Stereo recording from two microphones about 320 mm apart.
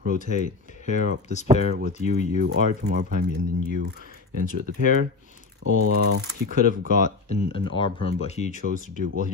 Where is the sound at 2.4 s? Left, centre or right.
Right.